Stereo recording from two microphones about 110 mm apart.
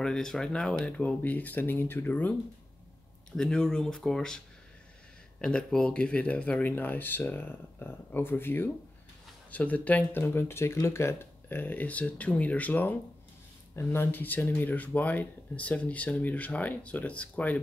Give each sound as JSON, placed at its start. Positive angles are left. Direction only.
{"t": 0.0, "sound": "speech", "side_deg": 5}
{"t": 3.3, "sound": "speech", "side_deg": 5}
{"t": 5.4, "sound": "speech", "side_deg": 5}